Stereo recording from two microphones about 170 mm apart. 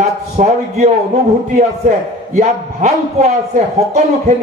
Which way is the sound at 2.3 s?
45° right (ahead or behind).